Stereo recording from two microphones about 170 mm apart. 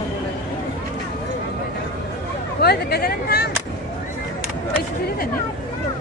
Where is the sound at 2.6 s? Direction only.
65° left (ahead or behind).